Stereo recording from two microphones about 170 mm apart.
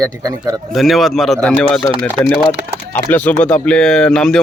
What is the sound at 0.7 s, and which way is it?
Speech, centre (ahead or behind).